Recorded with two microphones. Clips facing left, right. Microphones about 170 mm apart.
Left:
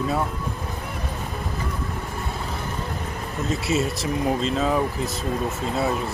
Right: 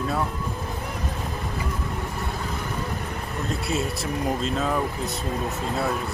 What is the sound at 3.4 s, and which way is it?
Speech, centre (ahead or behind).